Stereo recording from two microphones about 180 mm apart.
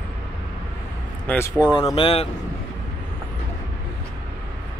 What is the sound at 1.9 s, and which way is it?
Speech, 30° left (ahead or behind).